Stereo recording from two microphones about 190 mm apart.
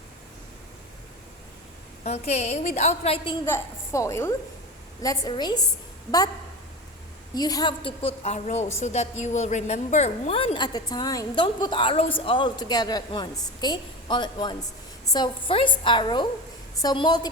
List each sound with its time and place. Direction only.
2.0 s a woman's voice: 35° left (ahead or behind)
3.4 s a woman's voice: 15° left (ahead or behind)
7.3 s a woman's voice: 20° left (ahead or behind)